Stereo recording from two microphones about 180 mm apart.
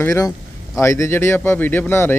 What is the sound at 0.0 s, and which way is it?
Speech, 15° left (ahead or behind).